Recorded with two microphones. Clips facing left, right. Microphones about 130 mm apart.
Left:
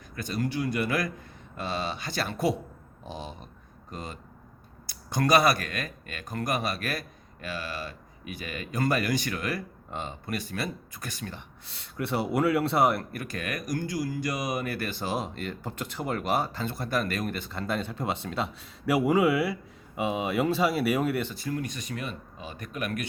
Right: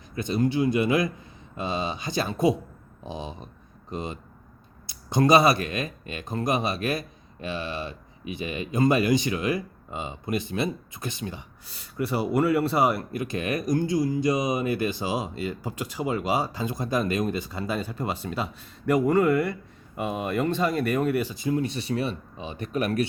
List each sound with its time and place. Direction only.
0.2 s speech: 20° right (ahead or behind)
11.7 s a man's voice: centre (ahead or behind)
13.1 s a man's voice: 20° right (ahead or behind); by 21.2 s 5° left (ahead or behind)
21.2 s speech: 15° right (ahead or behind); by 23.0 s 35° right (ahead or behind)